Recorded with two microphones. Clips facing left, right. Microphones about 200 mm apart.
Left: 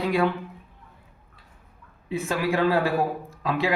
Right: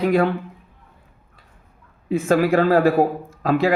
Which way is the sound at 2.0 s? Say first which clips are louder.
Right 8 dB; 50° right (ahead or behind).